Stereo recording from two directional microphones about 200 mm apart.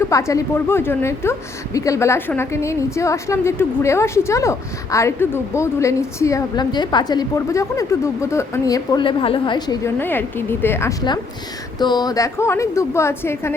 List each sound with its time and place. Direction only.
0.1 s a woman's voice: 15° left (ahead or behind)